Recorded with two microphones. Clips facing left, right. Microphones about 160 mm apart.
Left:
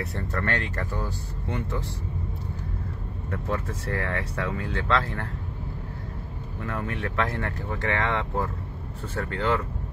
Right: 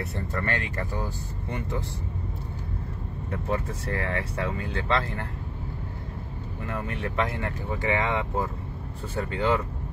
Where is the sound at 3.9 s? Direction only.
20° right (ahead or behind).